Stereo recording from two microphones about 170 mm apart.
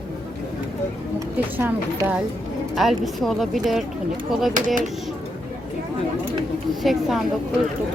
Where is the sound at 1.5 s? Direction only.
10° right (ahead or behind).